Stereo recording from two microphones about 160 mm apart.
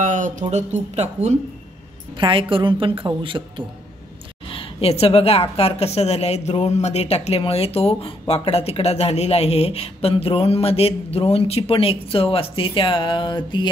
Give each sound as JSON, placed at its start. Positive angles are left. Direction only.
{"t": 0.0, "sound": "speech", "side_deg": -50}
{"t": 2.1, "sound": "a woman's voice", "side_deg": -30}
{"t": 4.5, "sound": "speech", "side_deg": 35}